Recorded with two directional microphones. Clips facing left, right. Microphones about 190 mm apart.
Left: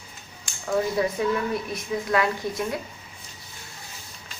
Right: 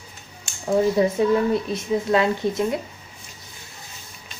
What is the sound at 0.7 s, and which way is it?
A woman's voice, 25° right (ahead or behind).